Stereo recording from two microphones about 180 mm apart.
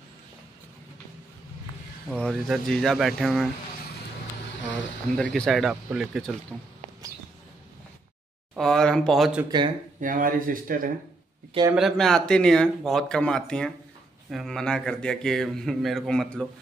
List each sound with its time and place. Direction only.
2.0 s speech: 5° left (ahead or behind)
5.1 s speech: 5° left (ahead or behind)
8.5 s speech: 5° left (ahead or behind)
9.9 s speech: 50° right (ahead or behind)
11.7 s speech: centre (ahead or behind)